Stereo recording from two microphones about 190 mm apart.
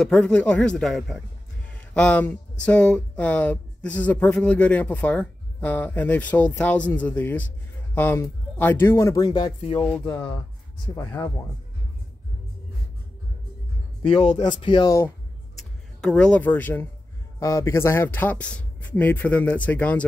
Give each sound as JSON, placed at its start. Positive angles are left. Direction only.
{"t": 0.0, "sound": "speech", "side_deg": 5}
{"t": 11.0, "sound": "speech", "side_deg": 10}
{"t": 14.0, "sound": "speech", "side_deg": 35}
{"t": 14.7, "sound": "speech", "side_deg": 25}
{"t": 15.5, "sound": "a sound", "side_deg": 5}
{"t": 17.4, "sound": "speech", "side_deg": 15}